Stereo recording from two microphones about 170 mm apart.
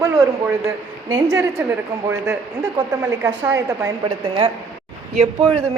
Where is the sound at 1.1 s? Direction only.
20° right (ahead or behind).